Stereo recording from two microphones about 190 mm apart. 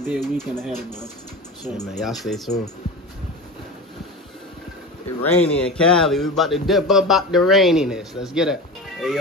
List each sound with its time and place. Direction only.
0.0 s speech: centre (ahead or behind)
2.0 s speech: centre (ahead or behind)
5.2 s speech: 5° left (ahead or behind)